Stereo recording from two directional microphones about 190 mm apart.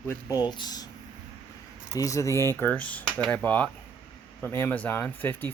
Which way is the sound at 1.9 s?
15° left (ahead or behind).